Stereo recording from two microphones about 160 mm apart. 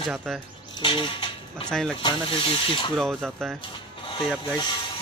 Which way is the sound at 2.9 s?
5° left (ahead or behind).